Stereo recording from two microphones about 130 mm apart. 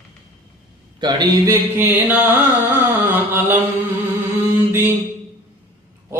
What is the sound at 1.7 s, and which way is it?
Mantra, 15° right (ahead or behind).